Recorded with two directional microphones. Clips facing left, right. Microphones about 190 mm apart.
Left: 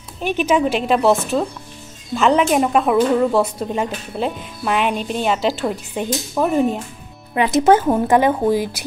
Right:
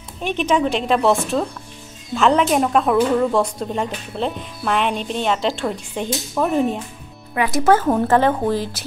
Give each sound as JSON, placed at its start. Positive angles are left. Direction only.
{"t": 0.2, "sound": "speech", "side_deg": 5}
{"t": 7.3, "sound": "a woman's voice", "side_deg": 20}